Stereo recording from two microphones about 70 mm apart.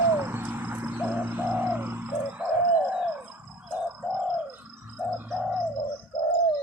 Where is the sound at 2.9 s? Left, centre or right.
Centre.